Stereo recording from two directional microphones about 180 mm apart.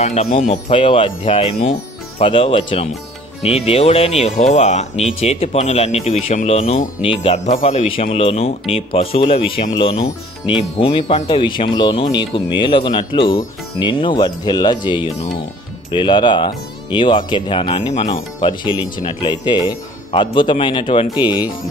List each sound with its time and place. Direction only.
0.0 s speech: 35° left (ahead or behind)